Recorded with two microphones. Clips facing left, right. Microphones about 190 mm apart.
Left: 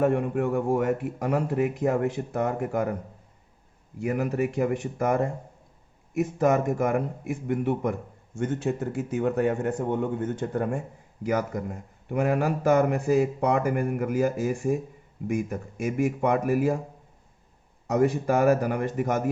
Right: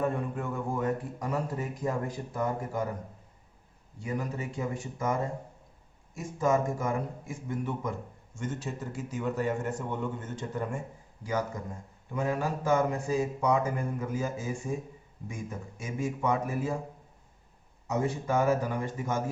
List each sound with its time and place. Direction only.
0.0 s a man's voice: 75° left (ahead or behind)
4.0 s a man's voice: 75° left (ahead or behind)
17.8 s a man's voice: 70° left (ahead or behind)